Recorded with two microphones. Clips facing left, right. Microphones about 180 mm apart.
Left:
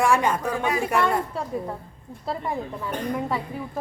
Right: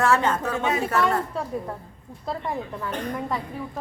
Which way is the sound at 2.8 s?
5° left (ahead or behind).